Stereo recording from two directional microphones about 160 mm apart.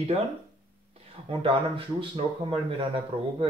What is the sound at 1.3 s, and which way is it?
Speech, 30° right (ahead or behind).